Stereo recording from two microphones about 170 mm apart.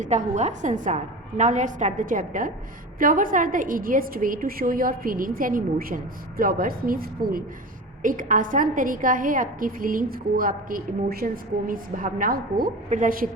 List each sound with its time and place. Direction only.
0.0 s a woman's voice: 45° right (ahead or behind)